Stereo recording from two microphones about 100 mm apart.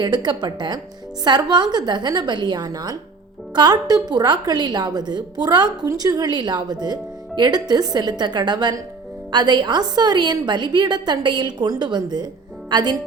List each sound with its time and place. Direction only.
0.0 s a woman's voice: 45° right (ahead or behind)